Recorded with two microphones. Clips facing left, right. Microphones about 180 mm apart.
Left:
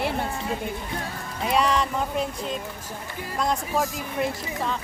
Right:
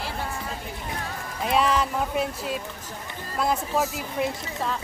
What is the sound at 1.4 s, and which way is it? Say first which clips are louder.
Speech: even; centre (ahead or behind).